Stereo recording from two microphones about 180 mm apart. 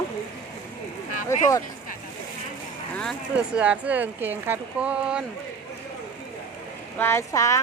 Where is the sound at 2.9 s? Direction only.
5° left (ahead or behind).